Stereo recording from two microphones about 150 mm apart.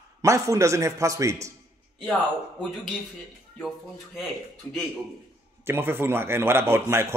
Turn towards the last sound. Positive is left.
turn(degrees=-15)  # may be behind; listen again after turning